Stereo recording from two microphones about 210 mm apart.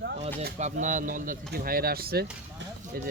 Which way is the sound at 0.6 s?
35° right (ahead or behind).